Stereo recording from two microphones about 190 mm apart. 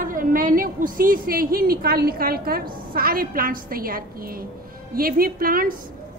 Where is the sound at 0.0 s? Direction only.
45° right (ahead or behind).